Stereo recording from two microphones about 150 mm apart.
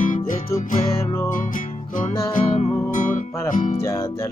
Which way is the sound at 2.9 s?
60° left (ahead or behind).